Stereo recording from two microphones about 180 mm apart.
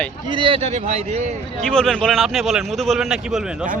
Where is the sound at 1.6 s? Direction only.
5° left (ahead or behind).